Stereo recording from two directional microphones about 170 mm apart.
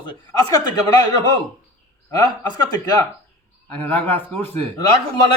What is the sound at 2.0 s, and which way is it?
Speech, 20° left (ahead or behind).